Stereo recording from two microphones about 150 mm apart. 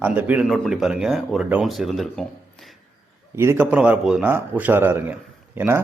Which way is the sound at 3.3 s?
15° right (ahead or behind).